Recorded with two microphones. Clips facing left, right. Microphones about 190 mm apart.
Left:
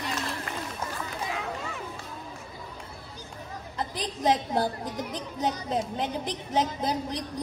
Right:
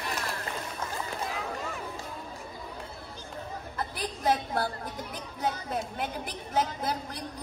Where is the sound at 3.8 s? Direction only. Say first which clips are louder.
Left 4 dB; 15° left (ahead or behind).